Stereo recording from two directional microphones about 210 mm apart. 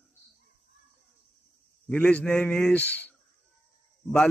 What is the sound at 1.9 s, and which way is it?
Speech, 5° left (ahead or behind).